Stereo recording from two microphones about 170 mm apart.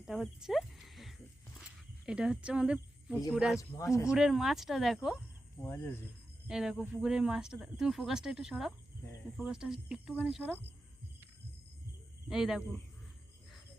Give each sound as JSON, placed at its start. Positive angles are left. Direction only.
{"t": 0.0, "sound": "cricket", "side_deg": 0}
{"t": 2.0, "sound": "speech", "side_deg": -5}
{"t": 3.6, "sound": "speech", "side_deg": 20}
{"t": 4.1, "sound": "speech", "side_deg": 0}
{"t": 5.6, "sound": "speech", "side_deg": 15}
{"t": 6.5, "sound": "speech", "side_deg": -5}
{"t": 12.3, "sound": "speech", "side_deg": -5}